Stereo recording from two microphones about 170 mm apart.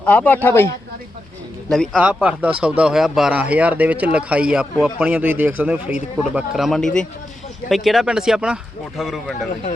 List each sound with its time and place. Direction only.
0.0 s speech: 10° left (ahead or behind)
1.7 s speech: centre (ahead or behind)